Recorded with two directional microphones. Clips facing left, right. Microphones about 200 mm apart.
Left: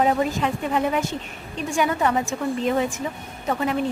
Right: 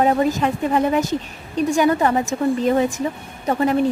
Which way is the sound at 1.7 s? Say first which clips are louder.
Right 4 dB; 40° right (ahead or behind).